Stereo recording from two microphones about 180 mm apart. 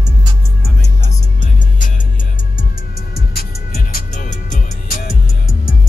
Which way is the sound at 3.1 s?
55° left (ahead or behind).